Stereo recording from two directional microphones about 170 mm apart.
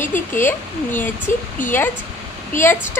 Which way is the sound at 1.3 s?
50° left (ahead or behind).